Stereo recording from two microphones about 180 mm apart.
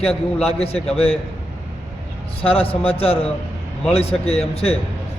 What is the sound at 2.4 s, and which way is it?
A man's voice, 30° left (ahead or behind).